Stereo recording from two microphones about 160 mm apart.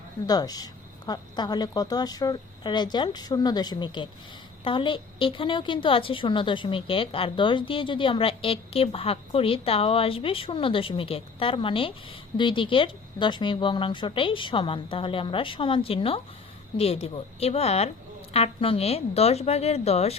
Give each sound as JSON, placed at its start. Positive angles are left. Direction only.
{"t": 0.3, "sound": "a woman's voice", "side_deg": 25}